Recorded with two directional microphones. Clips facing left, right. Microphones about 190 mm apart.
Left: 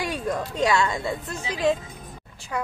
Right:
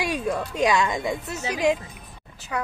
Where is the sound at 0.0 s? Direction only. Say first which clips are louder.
Right 1 dB; 10° right (ahead or behind).